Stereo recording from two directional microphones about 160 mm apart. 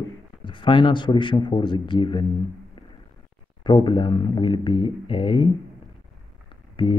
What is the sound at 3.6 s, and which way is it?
Speech, 30° left (ahead or behind).